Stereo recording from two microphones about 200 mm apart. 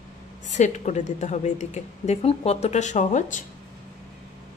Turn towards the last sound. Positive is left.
turn(degrees=40)  # may be behind; listen again after turning